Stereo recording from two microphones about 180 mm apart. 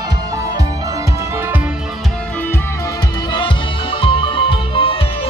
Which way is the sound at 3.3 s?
25° left (ahead or behind).